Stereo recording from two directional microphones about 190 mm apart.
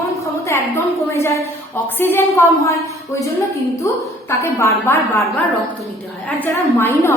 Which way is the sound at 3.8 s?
15° left (ahead or behind).